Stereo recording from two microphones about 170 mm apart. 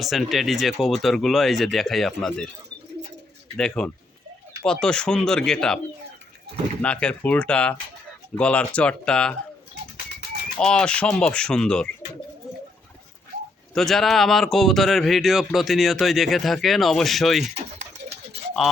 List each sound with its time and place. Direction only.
0.0 s speech: centre (ahead or behind)
3.6 s speech: 5° left (ahead or behind)
6.8 s speech: 5° left (ahead or behind)
10.6 s speech: 5° left (ahead or behind)
13.7 s speech: centre (ahead or behind)